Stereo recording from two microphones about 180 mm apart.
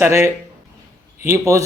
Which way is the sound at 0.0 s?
15° right (ahead or behind).